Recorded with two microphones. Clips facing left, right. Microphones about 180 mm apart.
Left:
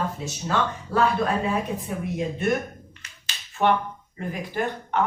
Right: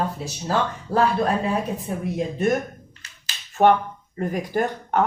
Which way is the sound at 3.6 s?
45° right (ahead or behind).